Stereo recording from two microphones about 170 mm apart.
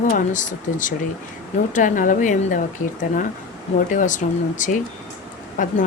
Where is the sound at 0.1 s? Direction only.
50° left (ahead or behind).